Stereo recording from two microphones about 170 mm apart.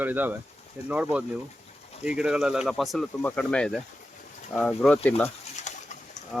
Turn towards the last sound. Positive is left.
turn(degrees=45)  # may be behind; listen again after turning